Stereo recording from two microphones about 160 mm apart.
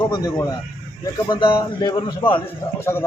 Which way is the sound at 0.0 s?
25° left (ahead or behind).